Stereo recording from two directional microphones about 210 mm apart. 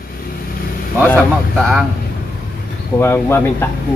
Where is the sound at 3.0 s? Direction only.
10° left (ahead or behind).